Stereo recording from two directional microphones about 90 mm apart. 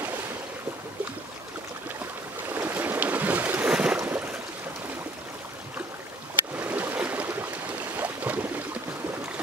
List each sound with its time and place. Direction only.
2.5 s boat: 20° right (ahead or behind)
6.5 s boat: 20° right (ahead or behind)